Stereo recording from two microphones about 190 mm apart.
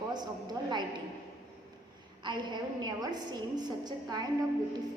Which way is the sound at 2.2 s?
25° right (ahead or behind).